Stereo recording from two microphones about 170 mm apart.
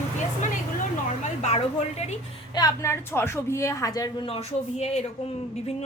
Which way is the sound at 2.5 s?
20° left (ahead or behind).